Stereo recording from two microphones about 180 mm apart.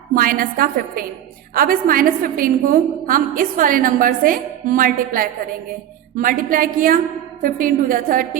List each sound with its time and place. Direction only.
0.1 s a woman's voice: 50° right (ahead or behind)